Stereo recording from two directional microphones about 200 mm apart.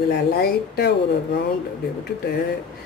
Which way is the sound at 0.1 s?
50° left (ahead or behind).